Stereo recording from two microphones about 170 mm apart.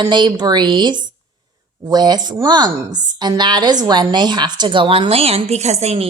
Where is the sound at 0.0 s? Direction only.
25° right (ahead or behind).